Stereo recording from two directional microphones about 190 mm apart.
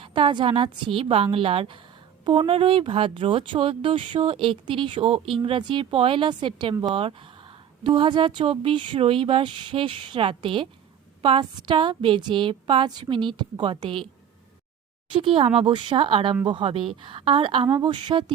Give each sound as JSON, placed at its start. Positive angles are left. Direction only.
{"t": 0.0, "sound": "speech", "side_deg": -25}
{"t": 15.1, "sound": "speech", "side_deg": -30}